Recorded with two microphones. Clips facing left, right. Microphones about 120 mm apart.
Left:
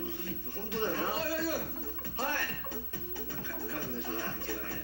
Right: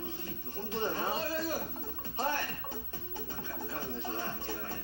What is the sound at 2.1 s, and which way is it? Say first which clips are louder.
Music: right 2 dB; 20° right (ahead or behind).